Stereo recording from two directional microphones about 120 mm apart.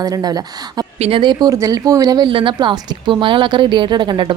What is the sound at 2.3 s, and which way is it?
A woman's voice, 45° right (ahead or behind).